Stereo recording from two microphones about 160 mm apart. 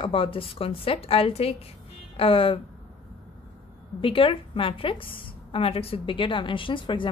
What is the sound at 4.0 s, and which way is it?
A woman's voice, 35° left (ahead or behind).